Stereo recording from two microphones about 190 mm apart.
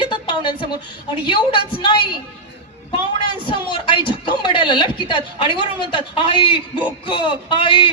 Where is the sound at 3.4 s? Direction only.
25° left (ahead or behind).